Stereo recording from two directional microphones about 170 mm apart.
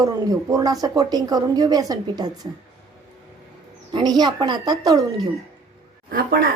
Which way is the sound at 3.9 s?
25° right (ahead or behind).